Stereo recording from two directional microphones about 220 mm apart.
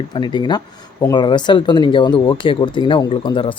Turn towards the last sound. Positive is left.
turn(degrees=20)  # may be behind; listen again after turning